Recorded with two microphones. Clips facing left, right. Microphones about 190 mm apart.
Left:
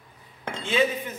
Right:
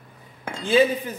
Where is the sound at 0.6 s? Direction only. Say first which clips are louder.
Right 6 dB; 35° right (ahead or behind).